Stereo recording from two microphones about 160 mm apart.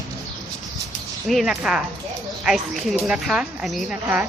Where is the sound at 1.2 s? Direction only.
Centre (ahead or behind).